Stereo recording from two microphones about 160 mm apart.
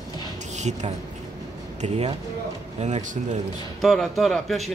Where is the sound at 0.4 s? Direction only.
45° right (ahead or behind).